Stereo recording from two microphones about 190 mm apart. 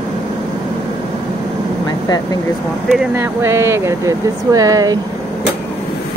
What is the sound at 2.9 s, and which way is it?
Speech, 10° right (ahead or behind).